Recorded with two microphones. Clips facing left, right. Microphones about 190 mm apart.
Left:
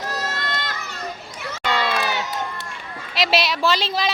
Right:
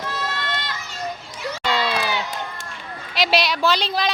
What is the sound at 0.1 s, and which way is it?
Run, 40° left (ahead or behind).